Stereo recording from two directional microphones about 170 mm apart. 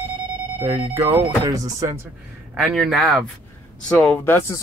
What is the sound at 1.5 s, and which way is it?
Speech, 20° right (ahead or behind).